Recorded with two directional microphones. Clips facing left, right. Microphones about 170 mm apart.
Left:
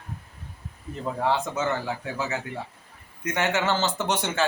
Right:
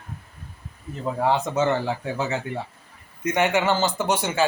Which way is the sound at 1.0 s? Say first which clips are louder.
Right 3 dB; 15° right (ahead or behind).